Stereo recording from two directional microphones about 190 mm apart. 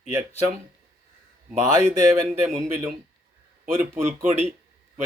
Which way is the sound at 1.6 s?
20° right (ahead or behind).